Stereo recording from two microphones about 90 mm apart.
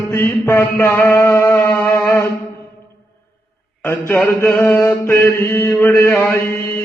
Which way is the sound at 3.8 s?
20° left (ahead or behind).